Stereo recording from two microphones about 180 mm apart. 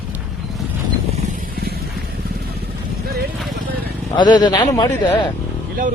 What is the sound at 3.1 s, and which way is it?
Vehicle, 60° right (ahead or behind).